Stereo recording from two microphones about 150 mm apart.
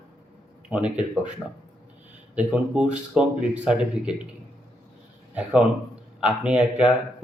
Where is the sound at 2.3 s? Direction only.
10° right (ahead or behind).